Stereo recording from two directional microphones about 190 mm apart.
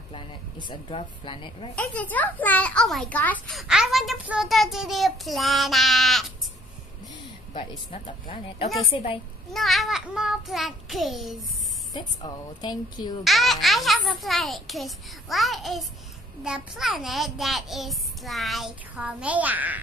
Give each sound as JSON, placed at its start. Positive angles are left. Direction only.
{"t": 0.1, "sound": "speech", "side_deg": 25}
{"t": 1.8, "sound": "a child's voice", "side_deg": 10}
{"t": 7.5, "sound": "speech", "side_deg": 25}
{"t": 9.5, "sound": "a child's voice", "side_deg": 0}
{"t": 11.9, "sound": "speech", "side_deg": 20}
{"t": 13.2, "sound": "a child's voice", "side_deg": 0}